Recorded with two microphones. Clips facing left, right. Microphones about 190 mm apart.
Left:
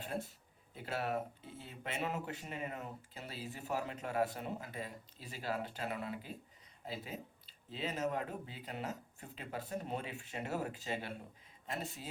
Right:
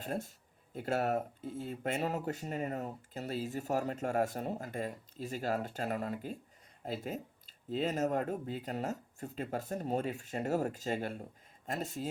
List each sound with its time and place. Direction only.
0.0 s speech: 45° right (ahead or behind)